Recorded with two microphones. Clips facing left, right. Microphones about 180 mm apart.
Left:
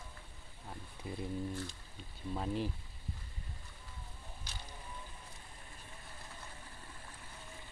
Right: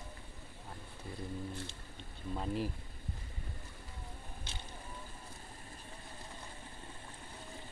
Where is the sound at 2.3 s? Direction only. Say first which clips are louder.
Even; centre (ahead or behind).